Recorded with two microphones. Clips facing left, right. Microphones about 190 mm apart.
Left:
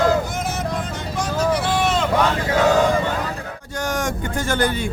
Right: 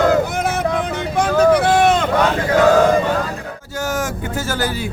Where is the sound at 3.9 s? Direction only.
5° right (ahead or behind).